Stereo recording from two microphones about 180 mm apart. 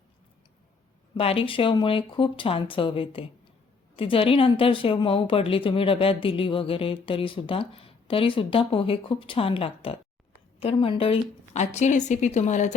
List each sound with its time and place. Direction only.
1.1 s a woman's voice: 30° left (ahead or behind)